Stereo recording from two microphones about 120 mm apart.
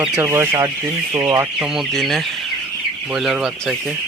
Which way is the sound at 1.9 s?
Centre (ahead or behind).